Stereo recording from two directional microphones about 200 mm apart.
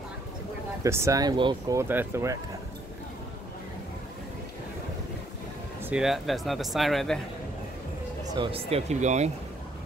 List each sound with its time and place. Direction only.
0.8 s speech: 15° right (ahead or behind)
5.9 s speech: centre (ahead or behind)
8.4 s speech: 25° right (ahead or behind)